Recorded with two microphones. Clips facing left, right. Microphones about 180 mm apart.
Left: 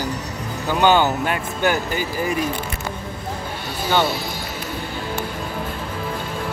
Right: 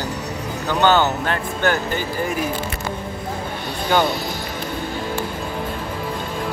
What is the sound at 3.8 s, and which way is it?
Speech, 5° left (ahead or behind).